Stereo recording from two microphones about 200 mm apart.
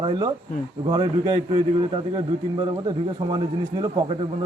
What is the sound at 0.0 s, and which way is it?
Speech, 20° right (ahead or behind).